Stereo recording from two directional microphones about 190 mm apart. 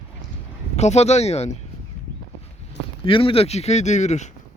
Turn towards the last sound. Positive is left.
turn(degrees=40)  # may be behind; listen again after turning